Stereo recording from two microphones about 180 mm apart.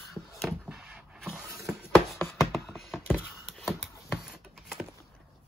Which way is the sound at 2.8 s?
Centre (ahead or behind).